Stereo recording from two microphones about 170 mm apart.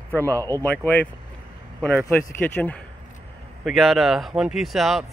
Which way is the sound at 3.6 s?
Centre (ahead or behind).